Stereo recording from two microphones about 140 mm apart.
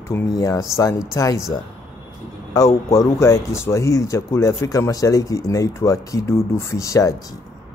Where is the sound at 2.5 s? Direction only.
25° left (ahead or behind).